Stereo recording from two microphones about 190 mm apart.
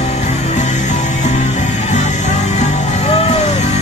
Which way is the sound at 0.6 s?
40° left (ahead or behind).